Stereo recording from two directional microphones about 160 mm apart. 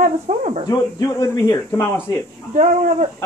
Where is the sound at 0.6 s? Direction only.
20° left (ahead or behind).